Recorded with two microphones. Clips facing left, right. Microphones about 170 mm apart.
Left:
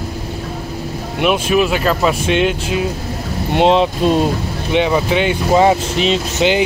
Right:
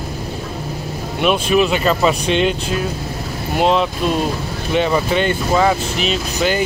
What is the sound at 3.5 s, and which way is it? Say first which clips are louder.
Speech: left 3 dB; 25° left (ahead or behind).